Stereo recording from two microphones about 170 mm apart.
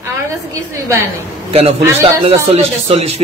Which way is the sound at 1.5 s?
35° right (ahead or behind).